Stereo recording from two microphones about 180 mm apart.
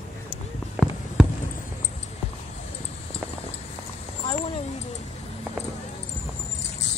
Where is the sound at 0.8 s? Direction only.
5° right (ahead or behind).